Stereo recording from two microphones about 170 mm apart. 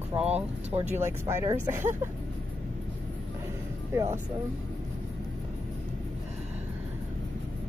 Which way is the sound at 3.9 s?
15° right (ahead or behind).